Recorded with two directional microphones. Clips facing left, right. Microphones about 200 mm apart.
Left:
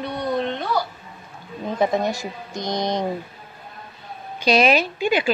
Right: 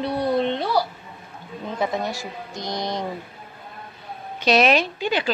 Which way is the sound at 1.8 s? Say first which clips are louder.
Left 5 dB; 20° left (ahead or behind).